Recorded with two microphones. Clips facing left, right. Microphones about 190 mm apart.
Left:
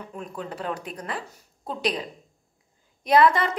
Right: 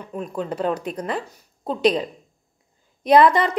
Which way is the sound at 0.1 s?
20° right (ahead or behind).